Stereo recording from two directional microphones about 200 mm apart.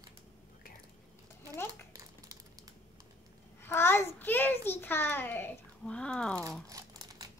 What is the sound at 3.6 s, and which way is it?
A child's voice, 10° left (ahead or behind).